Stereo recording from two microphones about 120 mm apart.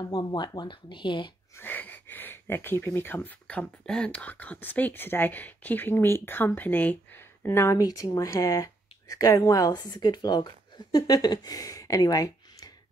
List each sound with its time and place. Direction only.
0.0 s speech: 40° left (ahead or behind)
1.6 s a woman's voice: 15° left (ahead or behind); by 12.7 s 30° left (ahead or behind)